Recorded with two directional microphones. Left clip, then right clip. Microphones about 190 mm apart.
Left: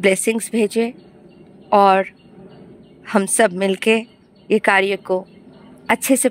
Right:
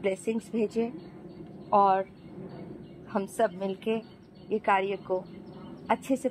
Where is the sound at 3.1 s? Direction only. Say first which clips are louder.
Left 12 dB; 55° left (ahead or behind).